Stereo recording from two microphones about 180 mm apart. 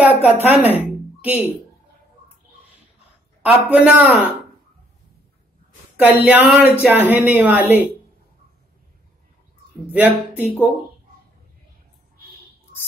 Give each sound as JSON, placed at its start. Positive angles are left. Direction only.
{"t": 0.0, "sound": "a woman's voice", "side_deg": -10}
{"t": 0.6, "sound": "speech", "side_deg": 35}
{"t": 1.2, "sound": "a woman's voice", "side_deg": -10}
{"t": 3.7, "sound": "a woman's voice", "side_deg": -10}
{"t": 5.9, "sound": "a woman's voice", "side_deg": -10}
{"t": 9.8, "sound": "a woman's voice", "side_deg": -10}